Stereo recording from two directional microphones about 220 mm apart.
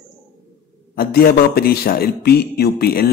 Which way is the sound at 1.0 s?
45° left (ahead or behind).